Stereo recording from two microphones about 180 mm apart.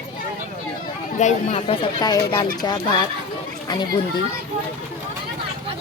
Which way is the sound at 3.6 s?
25° left (ahead or behind).